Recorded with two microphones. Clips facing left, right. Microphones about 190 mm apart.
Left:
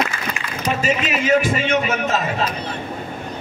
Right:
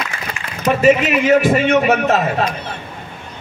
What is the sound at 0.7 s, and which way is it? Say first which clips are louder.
A man's voice: right 8 dB; 60° right (ahead or behind).